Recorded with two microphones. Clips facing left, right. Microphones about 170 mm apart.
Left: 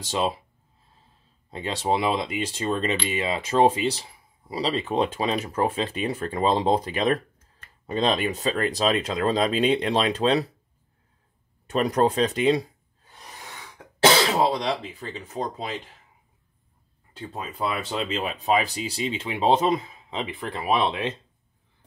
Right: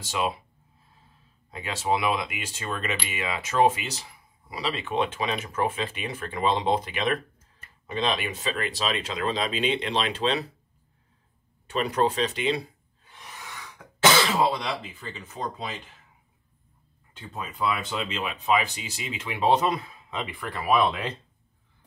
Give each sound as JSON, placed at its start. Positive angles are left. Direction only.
{"t": 1.5, "sound": "speech", "side_deg": 30}
{"t": 11.7, "sound": "speech", "side_deg": 40}
{"t": 12.4, "sound": "a sound", "side_deg": 40}
{"t": 13.9, "sound": "speech", "side_deg": 35}
{"t": 17.3, "sound": "speech", "side_deg": 35}